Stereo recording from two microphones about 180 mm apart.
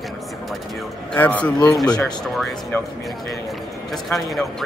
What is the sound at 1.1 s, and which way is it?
Speech, 10° left (ahead or behind).